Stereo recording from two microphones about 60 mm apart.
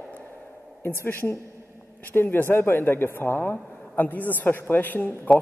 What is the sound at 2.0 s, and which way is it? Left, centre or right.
A man's voice, left.